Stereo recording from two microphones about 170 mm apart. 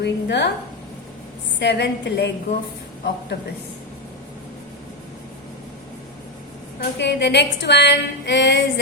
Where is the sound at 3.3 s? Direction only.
70° left (ahead or behind).